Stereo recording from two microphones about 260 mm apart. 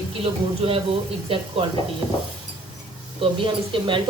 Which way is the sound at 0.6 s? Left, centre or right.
Right.